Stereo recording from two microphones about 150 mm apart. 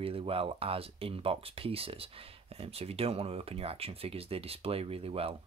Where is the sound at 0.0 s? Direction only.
40° right (ahead or behind).